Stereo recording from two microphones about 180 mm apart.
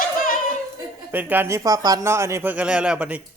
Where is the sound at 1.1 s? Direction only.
10° right (ahead or behind).